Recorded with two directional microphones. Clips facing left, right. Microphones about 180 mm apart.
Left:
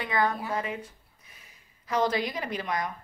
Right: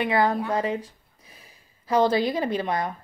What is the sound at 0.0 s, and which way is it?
A woman's voice, 30° right (ahead or behind).